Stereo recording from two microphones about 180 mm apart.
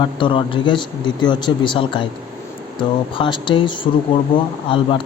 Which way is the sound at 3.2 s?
25° left (ahead or behind).